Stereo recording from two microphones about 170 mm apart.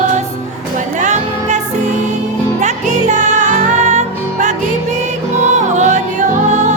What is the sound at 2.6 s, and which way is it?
Music, 45° right (ahead or behind).